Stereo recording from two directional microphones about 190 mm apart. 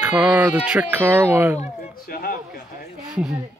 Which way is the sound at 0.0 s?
5° right (ahead or behind).